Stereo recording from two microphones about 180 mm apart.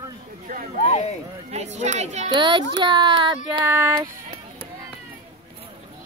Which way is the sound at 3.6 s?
10° right (ahead or behind).